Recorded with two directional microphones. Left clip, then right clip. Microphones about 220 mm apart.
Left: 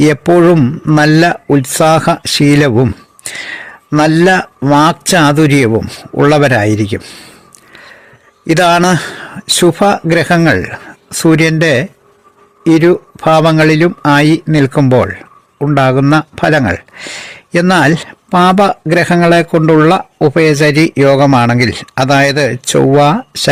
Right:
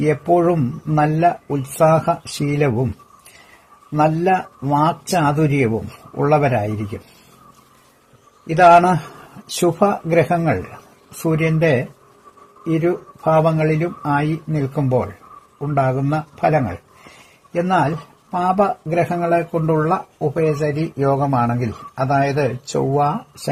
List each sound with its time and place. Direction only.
0.0 s speech: 45° left (ahead or behind)
3.9 s speech: 45° left (ahead or behind)
8.4 s speech: 45° left (ahead or behind)